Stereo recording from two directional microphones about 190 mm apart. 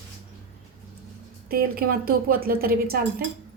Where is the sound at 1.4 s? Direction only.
50° right (ahead or behind).